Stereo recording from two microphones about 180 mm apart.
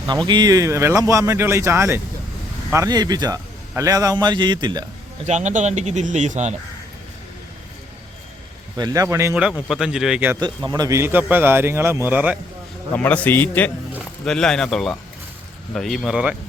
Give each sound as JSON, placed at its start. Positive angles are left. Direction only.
{"t": 0.3, "sound": "a man's voice", "side_deg": -20}
{"t": 5.2, "sound": "speech", "side_deg": -40}
{"t": 8.8, "sound": "a man's voice", "side_deg": -20}
{"t": 9.3, "sound": "speech", "side_deg": -5}
{"t": 10.4, "sound": "a man's voice", "side_deg": -20}
{"t": 12.9, "sound": "a man's voice", "side_deg": 10}